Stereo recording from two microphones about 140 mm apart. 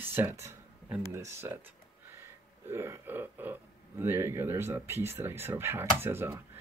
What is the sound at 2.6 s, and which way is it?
Speech, 15° right (ahead or behind).